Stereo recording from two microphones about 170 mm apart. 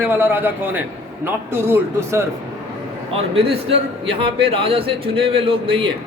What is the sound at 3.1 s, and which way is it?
A man's voice, 35° right (ahead or behind).